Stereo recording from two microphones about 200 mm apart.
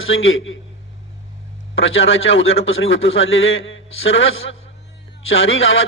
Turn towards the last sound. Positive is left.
turn(degrees=75)  # may be behind; listen again after turning